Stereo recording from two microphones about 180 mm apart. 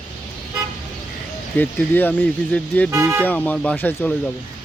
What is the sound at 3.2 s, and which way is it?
Speech, 10° left (ahead or behind).